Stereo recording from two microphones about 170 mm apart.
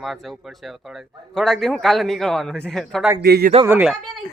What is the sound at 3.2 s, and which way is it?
Speech, 65° right (ahead or behind).